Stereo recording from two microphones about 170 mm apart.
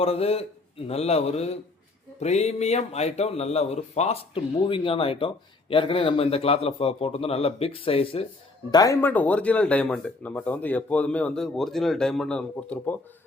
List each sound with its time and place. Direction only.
0.0 s speech: 35° left (ahead or behind)
8.7 s speech: 20° left (ahead or behind)